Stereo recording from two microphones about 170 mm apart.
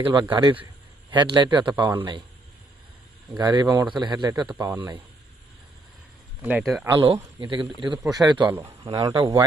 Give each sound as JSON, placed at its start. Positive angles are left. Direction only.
{"t": 0.0, "sound": "a man's voice", "side_deg": -25}
{"t": 3.3, "sound": "a man's voice", "side_deg": -25}
{"t": 6.4, "sound": "speech", "side_deg": -5}
{"t": 7.0, "sound": "a man's voice", "side_deg": -30}